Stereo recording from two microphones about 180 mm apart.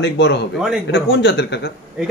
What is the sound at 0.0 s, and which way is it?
Speech, 70° left (ahead or behind).